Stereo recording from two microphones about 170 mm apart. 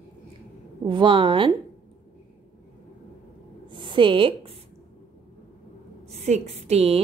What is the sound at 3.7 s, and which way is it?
Speech, 30° right (ahead or behind).